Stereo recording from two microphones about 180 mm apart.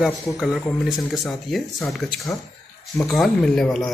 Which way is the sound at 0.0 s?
Centre (ahead or behind).